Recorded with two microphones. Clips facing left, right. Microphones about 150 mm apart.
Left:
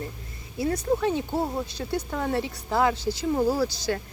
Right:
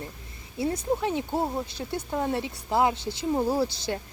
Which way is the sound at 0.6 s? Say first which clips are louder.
Left 2 dB; 20° right (ahead or behind).